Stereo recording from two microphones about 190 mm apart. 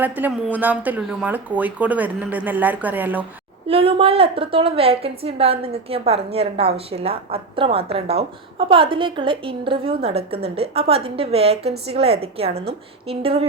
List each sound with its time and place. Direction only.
0.0 s speech: 10° right (ahead or behind)
3.7 s a woman's voice: 30° right (ahead or behind)